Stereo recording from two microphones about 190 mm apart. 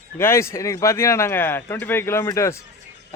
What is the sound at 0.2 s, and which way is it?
Speech, 15° left (ahead or behind).